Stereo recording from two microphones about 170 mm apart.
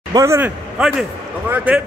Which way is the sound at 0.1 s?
15° right (ahead or behind).